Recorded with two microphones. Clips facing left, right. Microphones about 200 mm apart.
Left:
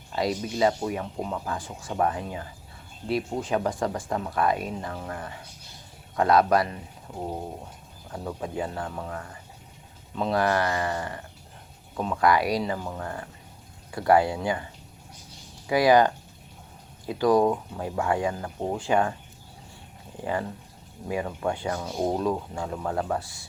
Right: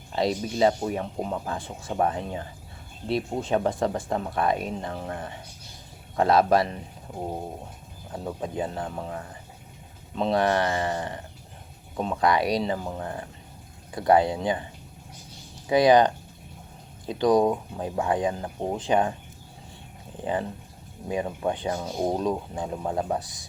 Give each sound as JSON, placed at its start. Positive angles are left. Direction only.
{"t": 0.1, "sound": "speech", "side_deg": -30}
{"t": 8.1, "sound": "speech", "side_deg": -25}
{"t": 15.7, "sound": "speech", "side_deg": -20}
{"t": 20.2, "sound": "speech", "side_deg": -20}